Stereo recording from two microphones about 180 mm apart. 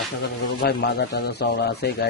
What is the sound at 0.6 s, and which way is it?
Speech, 60° left (ahead or behind).